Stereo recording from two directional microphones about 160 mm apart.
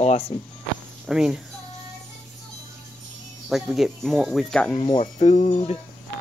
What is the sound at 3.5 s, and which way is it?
Speech, centre (ahead or behind).